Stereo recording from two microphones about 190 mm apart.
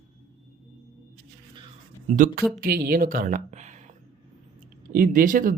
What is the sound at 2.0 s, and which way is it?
A man's voice, 45° right (ahead or behind).